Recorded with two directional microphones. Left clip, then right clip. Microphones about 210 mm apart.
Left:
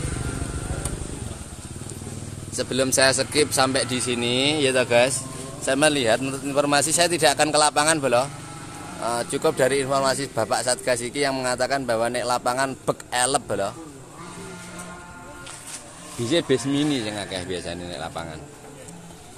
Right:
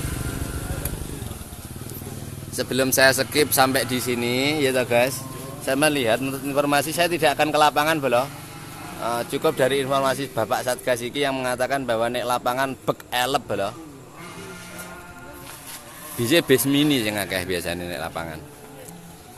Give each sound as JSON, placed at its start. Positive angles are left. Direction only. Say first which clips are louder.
{"t": 2.5, "sound": "a man's voice", "louder": "right 1 dB", "side_deg": -15}
{"t": 16.2, "sound": "speech", "louder": "right 3 dB", "side_deg": -20}